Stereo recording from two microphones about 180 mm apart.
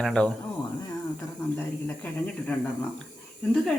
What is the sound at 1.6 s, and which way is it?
Speech, 10° left (ahead or behind).